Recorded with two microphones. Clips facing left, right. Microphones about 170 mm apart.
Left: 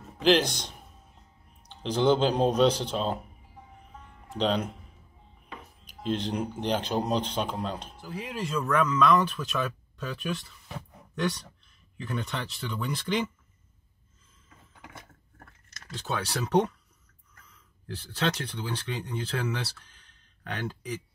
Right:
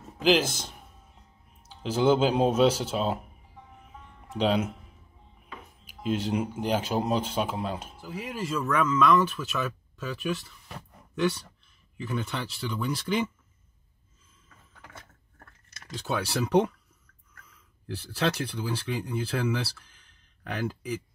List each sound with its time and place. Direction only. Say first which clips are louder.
0.2 s a man's voice: left 1 dB; centre (ahead or behind)
4.4 s speech: right 2 dB; 5° right (ahead or behind)
5.9 s speech: right 2 dB; 5° right (ahead or behind)
14.8 s a sound: left 1 dB; 15° left (ahead or behind)
15.8 s speech: right 2 dB; 10° right (ahead or behind)
17.8 s speech: right 2 dB; 10° right (ahead or behind)